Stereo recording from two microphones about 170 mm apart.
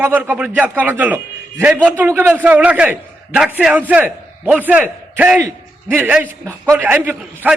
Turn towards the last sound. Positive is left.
turn(degrees=-10)  # may be behind; listen again after turning